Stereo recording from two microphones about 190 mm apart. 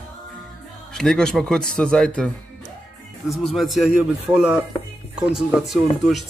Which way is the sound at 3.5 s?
Centre (ahead or behind).